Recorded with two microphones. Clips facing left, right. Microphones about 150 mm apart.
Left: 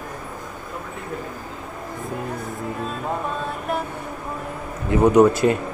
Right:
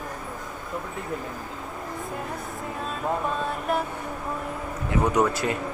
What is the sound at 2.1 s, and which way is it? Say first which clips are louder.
Music: left 4 dB; centre (ahead or behind).